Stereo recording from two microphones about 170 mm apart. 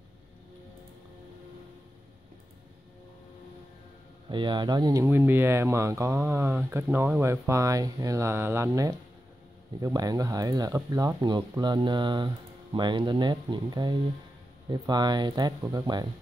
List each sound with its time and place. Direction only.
4.3 s speech: 30° right (ahead or behind)